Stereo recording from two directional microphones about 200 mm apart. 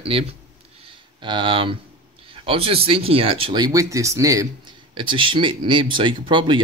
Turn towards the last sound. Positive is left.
turn(degrees=-25)  # may be behind; listen again after turning